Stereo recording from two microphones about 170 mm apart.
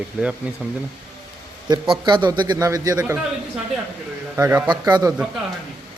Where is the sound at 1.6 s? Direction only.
30° right (ahead or behind).